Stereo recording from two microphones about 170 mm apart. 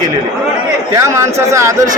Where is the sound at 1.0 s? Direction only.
15° right (ahead or behind).